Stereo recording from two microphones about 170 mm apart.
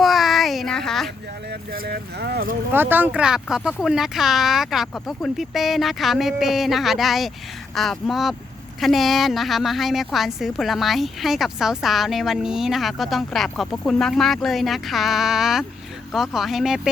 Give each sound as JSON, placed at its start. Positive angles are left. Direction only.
{"t": 0.0, "sound": "child singing", "side_deg": 0}
{"t": 1.7, "sound": "speech", "side_deg": -65}
{"t": 2.7, "sound": "speech", "side_deg": -10}